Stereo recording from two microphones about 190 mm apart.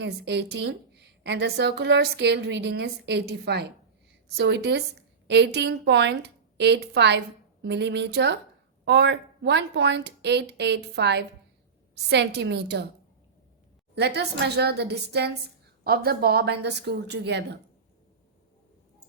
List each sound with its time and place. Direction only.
0.0 s a woman's voice: 65° right (ahead or behind)
13.9 s a woman's voice: 60° right (ahead or behind)